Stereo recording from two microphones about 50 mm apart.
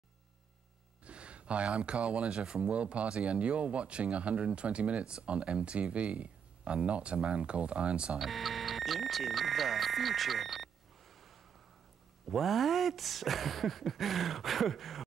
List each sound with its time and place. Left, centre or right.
1.0 s speech: right
8.2 s speech: centre